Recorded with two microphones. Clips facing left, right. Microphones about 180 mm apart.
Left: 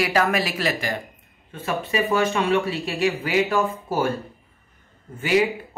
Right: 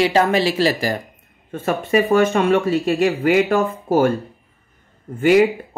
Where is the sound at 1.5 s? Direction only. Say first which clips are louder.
Right 7 dB; 50° right (ahead or behind).